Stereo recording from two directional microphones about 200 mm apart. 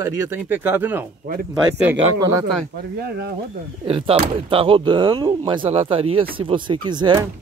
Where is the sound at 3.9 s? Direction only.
25° right (ahead or behind).